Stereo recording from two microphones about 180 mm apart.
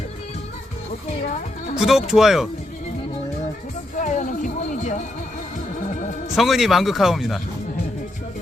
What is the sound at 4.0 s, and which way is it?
Music, 45° left (ahead or behind).